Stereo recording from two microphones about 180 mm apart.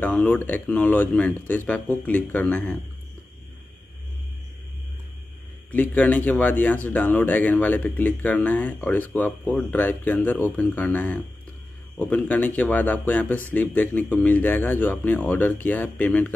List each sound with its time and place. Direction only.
0.0 s speech: 10° left (ahead or behind)
5.7 s speech: 10° left (ahead or behind)